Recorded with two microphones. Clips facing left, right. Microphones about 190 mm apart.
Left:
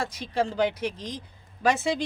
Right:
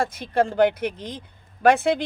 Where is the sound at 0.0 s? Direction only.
55° right (ahead or behind).